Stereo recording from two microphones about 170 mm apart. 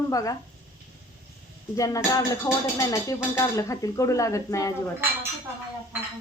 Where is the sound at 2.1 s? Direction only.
20° left (ahead or behind).